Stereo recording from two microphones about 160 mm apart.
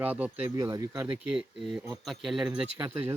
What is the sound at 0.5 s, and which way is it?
Speech, 20° right (ahead or behind).